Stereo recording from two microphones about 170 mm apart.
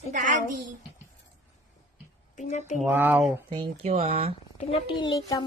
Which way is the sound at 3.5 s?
30° right (ahead or behind).